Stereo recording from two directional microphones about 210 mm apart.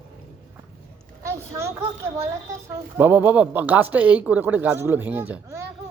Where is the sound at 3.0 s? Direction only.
10° right (ahead or behind).